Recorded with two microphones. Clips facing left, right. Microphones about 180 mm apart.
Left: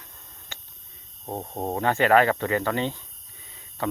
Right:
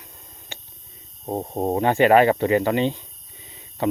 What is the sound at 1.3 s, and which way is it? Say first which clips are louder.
Speech: right 6 dB; 20° right (ahead or behind).